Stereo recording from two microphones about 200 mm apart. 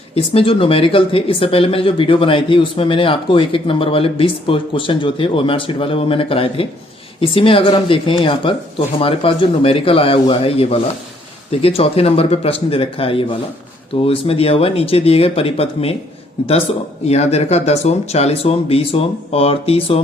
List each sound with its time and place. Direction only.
0.2 s speech: 30° left (ahead or behind)
17.1 s speech: 30° left (ahead or behind)